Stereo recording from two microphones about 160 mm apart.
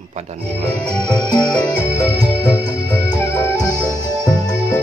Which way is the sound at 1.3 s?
5° left (ahead or behind).